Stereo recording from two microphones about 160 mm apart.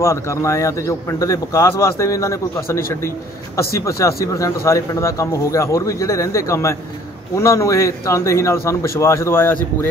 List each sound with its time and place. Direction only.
0.0 s speech: 20° left (ahead or behind)
4.0 s a man's voice: 20° left (ahead or behind)